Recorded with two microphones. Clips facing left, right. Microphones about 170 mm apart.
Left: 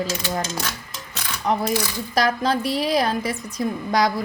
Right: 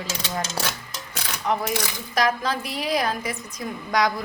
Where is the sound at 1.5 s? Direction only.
35° left (ahead or behind).